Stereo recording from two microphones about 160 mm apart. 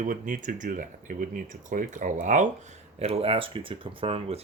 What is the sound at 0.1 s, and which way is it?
Speech, 55° right (ahead or behind).